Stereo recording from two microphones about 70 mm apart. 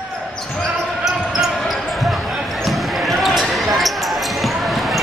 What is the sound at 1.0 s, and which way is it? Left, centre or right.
Basketball bounce, centre.